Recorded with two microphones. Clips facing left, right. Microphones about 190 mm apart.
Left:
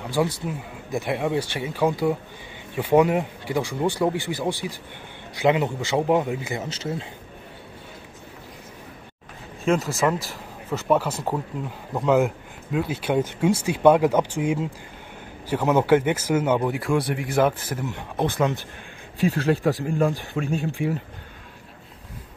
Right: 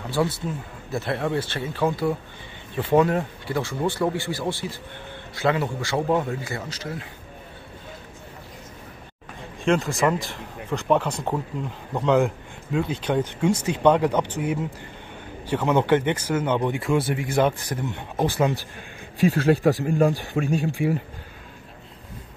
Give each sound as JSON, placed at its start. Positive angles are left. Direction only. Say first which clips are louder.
{"t": 0.1, "sound": "speech", "louder": "even", "side_deg": 15}
{"t": 9.7, "sound": "speech", "louder": "even", "side_deg": 0}
{"t": 19.6, "sound": "speech", "louder": "right 2 dB", "side_deg": -40}
{"t": 20.5, "sound": "speech", "louder": "right 1 dB", "side_deg": -10}